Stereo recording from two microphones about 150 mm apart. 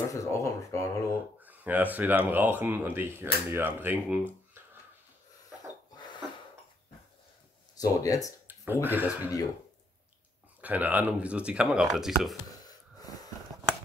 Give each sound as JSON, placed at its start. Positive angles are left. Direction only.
{"t": 0.1, "sound": "speech", "side_deg": 20}
{"t": 1.4, "sound": "speech", "side_deg": -10}
{"t": 7.7, "sound": "speech", "side_deg": 25}
{"t": 8.5, "sound": "a sound", "side_deg": -15}
{"t": 8.8, "sound": "speech", "side_deg": -15}
{"t": 10.6, "sound": "speech", "side_deg": -10}
{"t": 12.6, "sound": "wheeze", "side_deg": 25}